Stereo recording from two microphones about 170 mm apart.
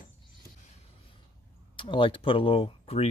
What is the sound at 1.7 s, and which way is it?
Speech, 30° left (ahead or behind).